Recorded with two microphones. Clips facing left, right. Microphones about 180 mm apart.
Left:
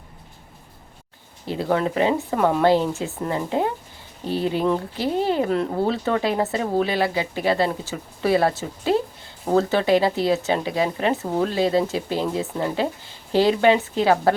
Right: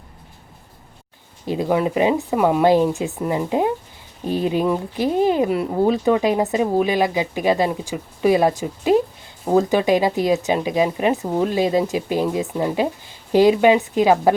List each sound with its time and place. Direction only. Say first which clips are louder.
1.5 s speech: right 3 dB; 15° right (ahead or behind)